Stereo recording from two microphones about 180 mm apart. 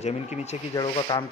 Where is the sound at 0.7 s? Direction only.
25° left (ahead or behind).